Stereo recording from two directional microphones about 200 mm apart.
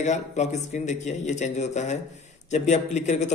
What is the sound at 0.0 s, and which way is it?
A man's voice, 35° left (ahead or behind).